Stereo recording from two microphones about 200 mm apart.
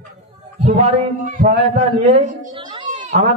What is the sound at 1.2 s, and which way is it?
A man's voice, 40° right (ahead or behind).